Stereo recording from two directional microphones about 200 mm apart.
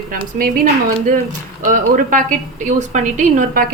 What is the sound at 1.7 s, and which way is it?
A woman's voice, 40° right (ahead or behind).